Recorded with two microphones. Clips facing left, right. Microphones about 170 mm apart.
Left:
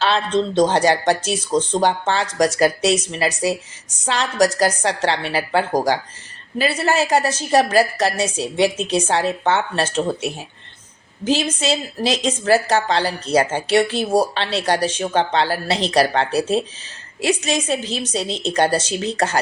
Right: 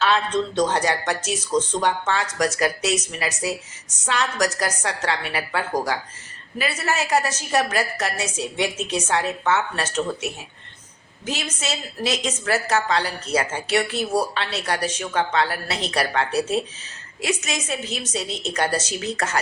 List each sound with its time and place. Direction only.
0.0 s a woman's voice: 30° left (ahead or behind)